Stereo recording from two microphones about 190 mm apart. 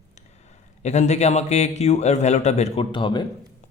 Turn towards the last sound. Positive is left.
turn(degrees=25)  # may be behind; listen again after turning